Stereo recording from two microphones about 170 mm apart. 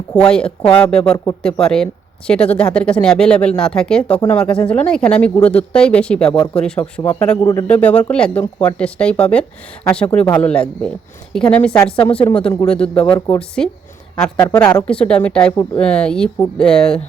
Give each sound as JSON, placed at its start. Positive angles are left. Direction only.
{"t": 0.1, "sound": "a woman's voice", "side_deg": 5}
{"t": 6.2, "sound": "speech", "side_deg": 30}
{"t": 6.5, "sound": "a woman's voice", "side_deg": 5}
{"t": 13.1, "sound": "a woman's voice", "side_deg": 15}